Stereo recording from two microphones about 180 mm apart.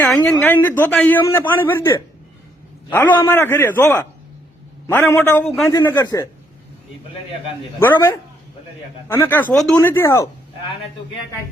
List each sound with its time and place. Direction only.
0.0 s a man's voice: 5° left (ahead or behind)
2.9 s a man's voice: 10° left (ahead or behind)
7.8 s a man's voice: 15° left (ahead or behind)